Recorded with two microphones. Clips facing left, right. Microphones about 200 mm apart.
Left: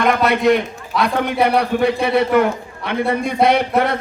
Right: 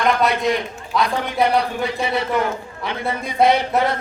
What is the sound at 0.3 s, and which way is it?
A woman's voice, 60° left (ahead or behind).